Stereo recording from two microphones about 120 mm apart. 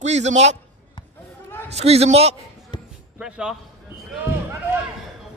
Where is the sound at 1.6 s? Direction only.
60° right (ahead or behind).